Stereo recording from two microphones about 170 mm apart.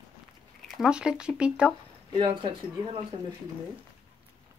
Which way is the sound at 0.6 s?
Centre (ahead or behind).